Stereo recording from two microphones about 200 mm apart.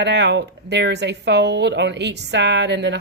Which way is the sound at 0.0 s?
60° right (ahead or behind).